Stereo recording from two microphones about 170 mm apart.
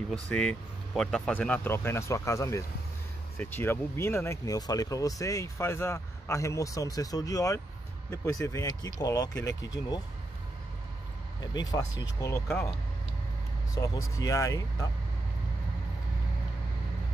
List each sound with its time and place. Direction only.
0.3 s speech: 5° left (ahead or behind); by 9.3 s 20° left (ahead or behind)
9.5 s speech: 90° left
11.5 s speech: 25° left (ahead or behind)
13.7 s speech: 20° left (ahead or behind)